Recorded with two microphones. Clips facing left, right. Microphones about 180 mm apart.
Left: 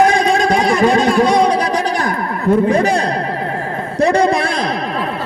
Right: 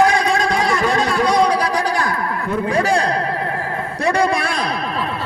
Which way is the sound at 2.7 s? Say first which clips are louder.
Left 4 dB; 20° left (ahead or behind).